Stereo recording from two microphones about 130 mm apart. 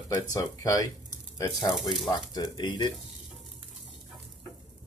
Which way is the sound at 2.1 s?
30° left (ahead or behind).